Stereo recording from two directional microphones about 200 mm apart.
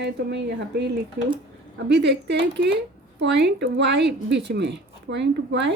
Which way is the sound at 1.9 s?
60° right (ahead or behind).